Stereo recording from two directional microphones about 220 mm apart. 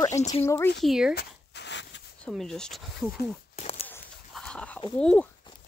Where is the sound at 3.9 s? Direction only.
5° left (ahead or behind).